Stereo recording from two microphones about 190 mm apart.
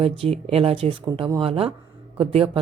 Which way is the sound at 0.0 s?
30° right (ahead or behind).